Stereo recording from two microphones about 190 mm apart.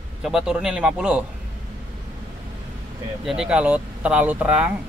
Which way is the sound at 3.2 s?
5° right (ahead or behind).